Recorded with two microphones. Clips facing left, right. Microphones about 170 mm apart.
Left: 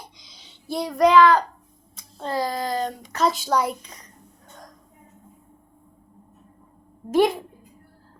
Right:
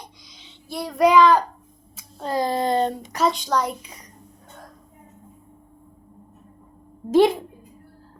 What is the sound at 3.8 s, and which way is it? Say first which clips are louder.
Speech: right 2 dB; 10° right (ahead or behind).